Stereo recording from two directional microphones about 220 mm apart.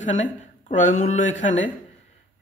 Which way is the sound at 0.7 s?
35° left (ahead or behind).